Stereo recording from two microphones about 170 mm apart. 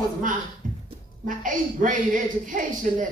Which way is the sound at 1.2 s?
50° right (ahead or behind).